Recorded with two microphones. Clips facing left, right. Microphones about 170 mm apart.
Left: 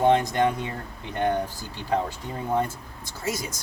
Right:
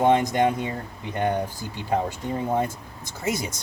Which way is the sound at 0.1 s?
15° right (ahead or behind).